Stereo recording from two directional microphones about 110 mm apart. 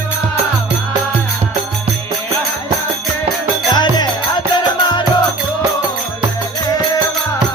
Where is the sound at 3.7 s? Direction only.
40° left (ahead or behind).